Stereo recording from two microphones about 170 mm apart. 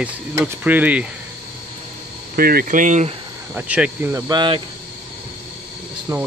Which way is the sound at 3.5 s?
10° right (ahead or behind).